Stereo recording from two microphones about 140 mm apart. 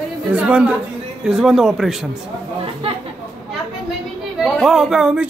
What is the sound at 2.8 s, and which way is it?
Speech, 45° right (ahead or behind).